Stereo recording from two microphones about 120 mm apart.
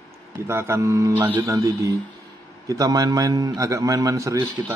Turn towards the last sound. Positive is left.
turn(degrees=-15)  # may be behind; listen again after turning